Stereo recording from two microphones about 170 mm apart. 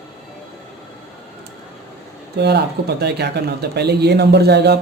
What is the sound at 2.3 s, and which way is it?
Speech, 75° right (ahead or behind).